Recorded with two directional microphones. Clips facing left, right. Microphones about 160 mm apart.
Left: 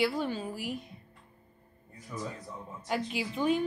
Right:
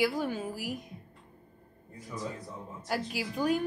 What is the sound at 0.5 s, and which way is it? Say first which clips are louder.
Speech: even; 45° right (ahead or behind).